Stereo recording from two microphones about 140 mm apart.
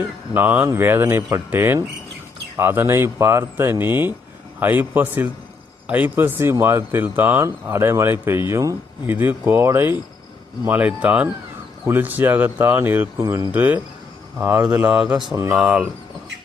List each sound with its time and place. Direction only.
0.3 s speech: 10° right (ahead or behind)